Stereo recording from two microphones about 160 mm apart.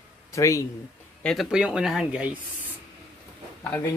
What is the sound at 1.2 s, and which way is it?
Speech, centre (ahead or behind).